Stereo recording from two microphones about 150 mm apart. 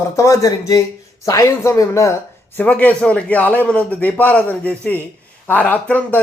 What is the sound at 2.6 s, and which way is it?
A man's voice, 10° left (ahead or behind).